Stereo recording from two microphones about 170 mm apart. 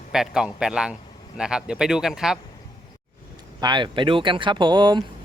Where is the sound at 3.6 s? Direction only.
25° right (ahead or behind).